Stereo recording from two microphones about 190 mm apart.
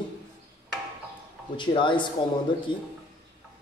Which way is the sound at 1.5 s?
25° left (ahead or behind).